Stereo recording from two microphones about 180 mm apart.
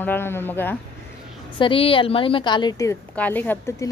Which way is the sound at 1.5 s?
30° left (ahead or behind).